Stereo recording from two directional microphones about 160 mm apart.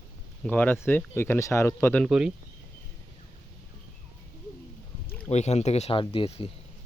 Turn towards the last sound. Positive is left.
turn(degrees=35)  # may be behind; listen again after turning